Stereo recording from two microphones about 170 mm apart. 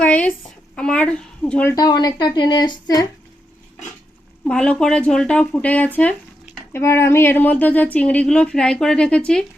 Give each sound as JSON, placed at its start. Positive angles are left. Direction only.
{"t": 0.0, "sound": "a sound", "side_deg": 10}
{"t": 0.8, "sound": "speech", "side_deg": 5}
{"t": 1.7, "sound": "speech", "side_deg": 25}
{"t": 4.4, "sound": "speech", "side_deg": 5}